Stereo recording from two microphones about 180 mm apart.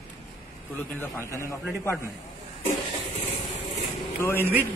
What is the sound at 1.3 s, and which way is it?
Speech, 15° left (ahead or behind).